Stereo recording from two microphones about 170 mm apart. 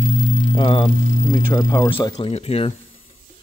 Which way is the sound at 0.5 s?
30° left (ahead or behind).